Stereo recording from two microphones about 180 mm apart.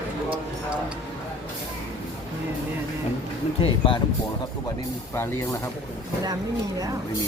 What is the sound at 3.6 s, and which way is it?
Speech, 30° left (ahead or behind).